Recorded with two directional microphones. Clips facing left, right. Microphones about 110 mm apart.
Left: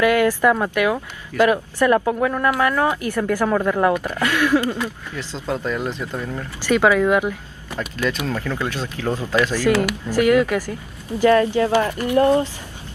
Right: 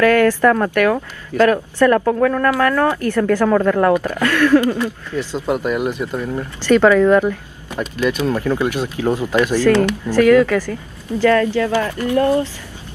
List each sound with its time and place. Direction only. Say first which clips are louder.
0.0 s speech: right 3 dB; 15° left (ahead or behind)
5.1 s speech: right 8 dB; 15° right (ahead or behind)
6.6 s speech: right 5 dB; 10° left (ahead or behind)
7.7 s speech: right 4 dB; 15° right (ahead or behind)
9.6 s speech: right 4 dB; 5° left (ahead or behind)